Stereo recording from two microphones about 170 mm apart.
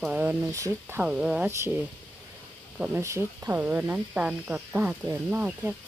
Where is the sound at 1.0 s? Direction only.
5° right (ahead or behind).